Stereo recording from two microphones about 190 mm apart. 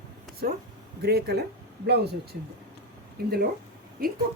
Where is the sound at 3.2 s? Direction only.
55° right (ahead or behind).